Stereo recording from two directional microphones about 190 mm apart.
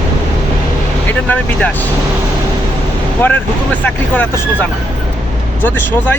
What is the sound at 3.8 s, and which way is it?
Speech, 10° left (ahead or behind).